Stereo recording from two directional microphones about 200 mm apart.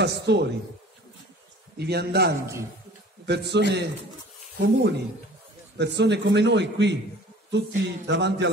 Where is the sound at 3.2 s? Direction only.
55° right (ahead or behind).